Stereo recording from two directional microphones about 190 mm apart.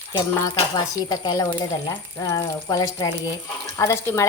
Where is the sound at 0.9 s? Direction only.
20° left (ahead or behind).